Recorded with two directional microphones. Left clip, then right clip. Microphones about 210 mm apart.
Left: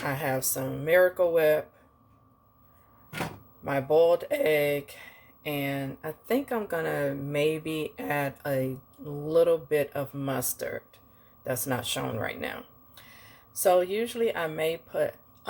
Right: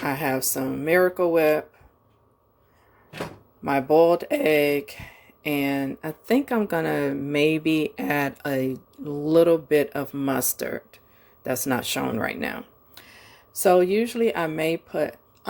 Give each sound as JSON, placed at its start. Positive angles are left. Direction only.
{"t": 0.0, "sound": "speech", "side_deg": -45}
{"t": 3.6, "sound": "speech", "side_deg": -40}